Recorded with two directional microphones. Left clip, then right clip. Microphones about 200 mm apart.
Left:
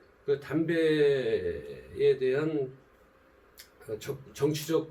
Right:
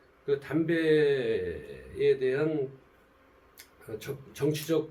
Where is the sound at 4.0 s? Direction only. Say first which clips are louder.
Left 1 dB; 15° right (ahead or behind).